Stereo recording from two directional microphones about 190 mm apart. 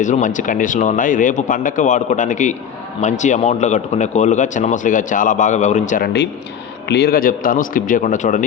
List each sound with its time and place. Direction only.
0.0 s speech: 40° left (ahead or behind)
6.8 s a man's voice: 60° left (ahead or behind); by 8.4 s 40° left (ahead or behind)